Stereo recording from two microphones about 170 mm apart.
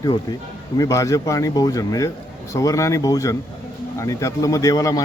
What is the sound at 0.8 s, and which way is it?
Speech, 20° left (ahead or behind).